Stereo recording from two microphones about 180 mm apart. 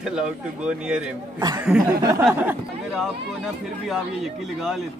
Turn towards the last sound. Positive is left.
turn(degrees=0)  # may be behind; listen again after turning